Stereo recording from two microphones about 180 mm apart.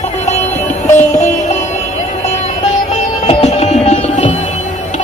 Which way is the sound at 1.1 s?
40° left (ahead or behind).